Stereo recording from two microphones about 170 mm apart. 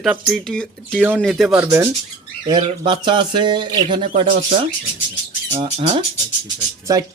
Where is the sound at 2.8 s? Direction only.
30° right (ahead or behind).